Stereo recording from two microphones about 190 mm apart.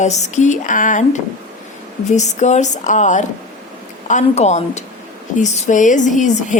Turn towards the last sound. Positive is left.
turn(degrees=40)  # may be behind; listen again after turning